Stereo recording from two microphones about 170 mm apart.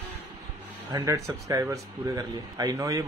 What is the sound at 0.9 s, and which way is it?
Speech, 20° right (ahead or behind).